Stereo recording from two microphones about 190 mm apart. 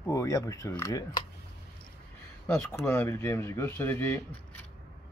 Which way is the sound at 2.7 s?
15° left (ahead or behind).